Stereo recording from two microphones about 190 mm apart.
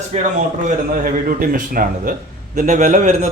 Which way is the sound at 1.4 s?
45° right (ahead or behind).